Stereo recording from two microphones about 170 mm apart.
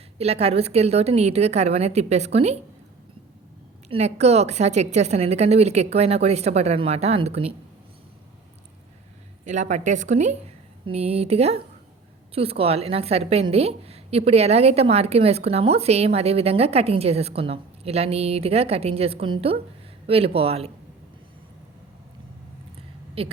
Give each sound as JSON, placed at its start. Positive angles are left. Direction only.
{"t": 0.2, "sound": "a woman's voice", "side_deg": -35}
{"t": 3.8, "sound": "a woman's voice", "side_deg": -40}
{"t": 9.4, "sound": "a woman's voice", "side_deg": -45}
{"t": 23.2, "sound": "a woman's voice", "side_deg": -35}